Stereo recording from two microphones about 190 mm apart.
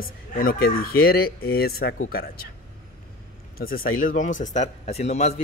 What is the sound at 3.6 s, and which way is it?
A man's voice, 50° left (ahead or behind).